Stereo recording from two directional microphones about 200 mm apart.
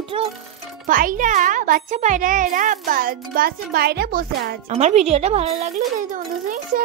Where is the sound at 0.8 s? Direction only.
40° right (ahead or behind).